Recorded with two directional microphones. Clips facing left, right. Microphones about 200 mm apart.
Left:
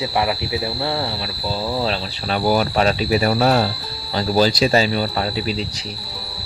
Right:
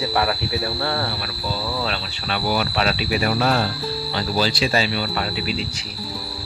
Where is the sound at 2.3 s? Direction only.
40° left (ahead or behind).